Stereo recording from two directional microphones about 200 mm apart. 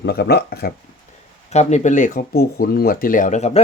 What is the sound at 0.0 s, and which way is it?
Speech, 55° left (ahead or behind).